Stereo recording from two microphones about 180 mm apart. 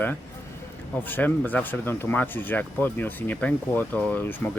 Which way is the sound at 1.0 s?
10° left (ahead or behind).